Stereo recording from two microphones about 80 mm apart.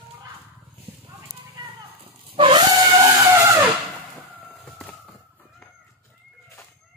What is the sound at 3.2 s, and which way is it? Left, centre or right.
Vehicle, right.